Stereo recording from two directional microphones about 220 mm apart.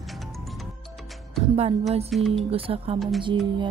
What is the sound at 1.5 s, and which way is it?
Speech, 30° right (ahead or behind).